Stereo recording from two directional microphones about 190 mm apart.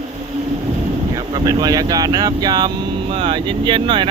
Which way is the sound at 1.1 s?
20° right (ahead or behind).